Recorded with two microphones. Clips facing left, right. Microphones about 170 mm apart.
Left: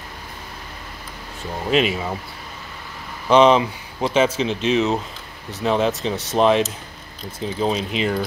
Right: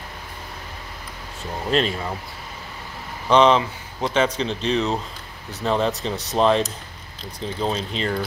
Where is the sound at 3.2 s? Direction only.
10° left (ahead or behind).